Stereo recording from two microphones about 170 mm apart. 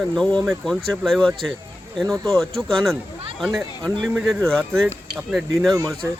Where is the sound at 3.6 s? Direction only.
20° right (ahead or behind).